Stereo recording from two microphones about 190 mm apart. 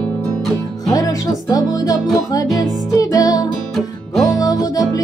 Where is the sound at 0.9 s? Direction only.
20° left (ahead or behind).